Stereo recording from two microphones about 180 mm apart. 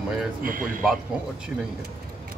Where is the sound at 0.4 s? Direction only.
50° right (ahead or behind).